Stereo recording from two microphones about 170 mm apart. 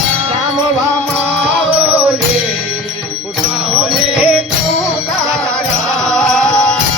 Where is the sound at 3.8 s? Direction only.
5° right (ahead or behind).